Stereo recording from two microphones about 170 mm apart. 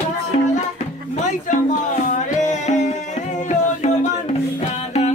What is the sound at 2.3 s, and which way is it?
Music, 45° left (ahead or behind).